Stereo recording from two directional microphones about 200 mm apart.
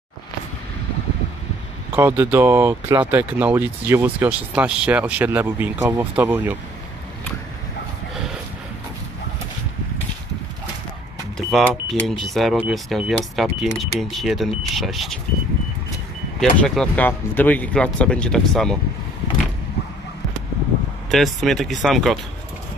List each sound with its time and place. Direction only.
2.0 s speech: 10° right (ahead or behind)
11.3 s speech: centre (ahead or behind)
16.3 s speech: centre (ahead or behind)
21.1 s speech: centre (ahead or behind)